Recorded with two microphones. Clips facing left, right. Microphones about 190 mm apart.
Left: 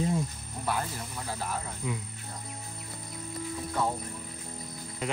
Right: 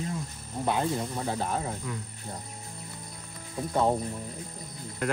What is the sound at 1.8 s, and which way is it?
Speech, 5° left (ahead or behind).